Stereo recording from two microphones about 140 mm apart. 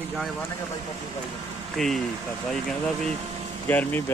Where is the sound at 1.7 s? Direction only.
Centre (ahead or behind).